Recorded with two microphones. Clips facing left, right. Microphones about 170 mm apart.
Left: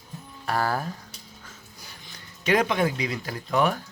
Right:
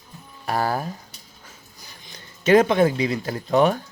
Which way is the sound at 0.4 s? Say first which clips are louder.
Right 2 dB; 15° right (ahead or behind).